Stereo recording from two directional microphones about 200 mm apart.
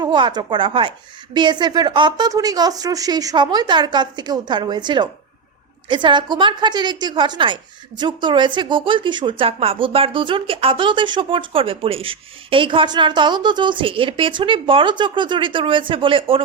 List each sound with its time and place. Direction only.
0.0 s a woman's voice: 25° right (ahead or behind)